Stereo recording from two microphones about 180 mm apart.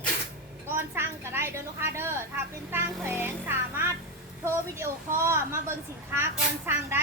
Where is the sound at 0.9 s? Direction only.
15° right (ahead or behind).